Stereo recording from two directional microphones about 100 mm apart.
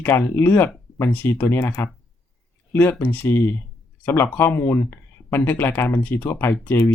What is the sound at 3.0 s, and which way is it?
Speech, 20° left (ahead or behind).